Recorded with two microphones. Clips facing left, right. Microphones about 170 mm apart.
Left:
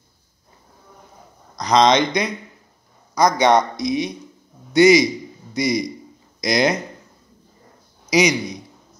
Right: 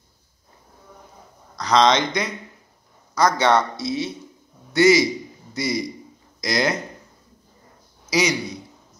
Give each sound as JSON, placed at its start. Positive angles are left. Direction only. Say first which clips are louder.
{"t": 1.6, "sound": "a man's voice", "louder": "left 2 dB", "side_deg": 15}
{"t": 8.1, "sound": "a man's voice", "louder": "left 4 dB", "side_deg": 15}